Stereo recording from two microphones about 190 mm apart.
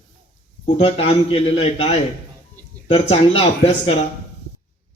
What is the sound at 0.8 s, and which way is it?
Speech, 30° left (ahead or behind).